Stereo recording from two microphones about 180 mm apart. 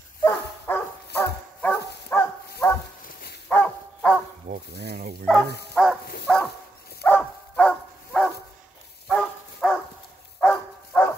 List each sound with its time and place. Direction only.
0.3 s dog: 10° left (ahead or behind)
4.5 s stir: 60° right (ahead or behind)
5.8 s bow-wow: 5° left (ahead or behind)
6.2 s dog: 5° left (ahead or behind)